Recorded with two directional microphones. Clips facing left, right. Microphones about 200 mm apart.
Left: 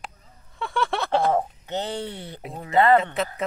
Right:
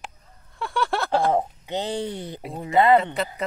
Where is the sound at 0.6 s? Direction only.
Centre (ahead or behind).